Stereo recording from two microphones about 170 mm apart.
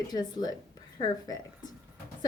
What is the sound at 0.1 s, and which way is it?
A woman's voice, 25° left (ahead or behind).